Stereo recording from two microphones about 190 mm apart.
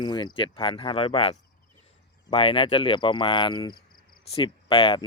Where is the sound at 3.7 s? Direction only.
50° left (ahead or behind).